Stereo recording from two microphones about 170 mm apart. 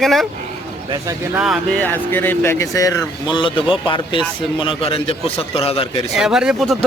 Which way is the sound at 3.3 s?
30° left (ahead or behind).